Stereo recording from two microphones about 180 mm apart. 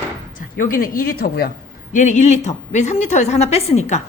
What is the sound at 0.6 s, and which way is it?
A man's voice, 50° left (ahead or behind).